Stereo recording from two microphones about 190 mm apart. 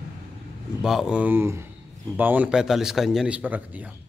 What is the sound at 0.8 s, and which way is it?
Speech, 5° right (ahead or behind).